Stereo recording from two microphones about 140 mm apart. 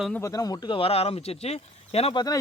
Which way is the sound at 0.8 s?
45° left (ahead or behind).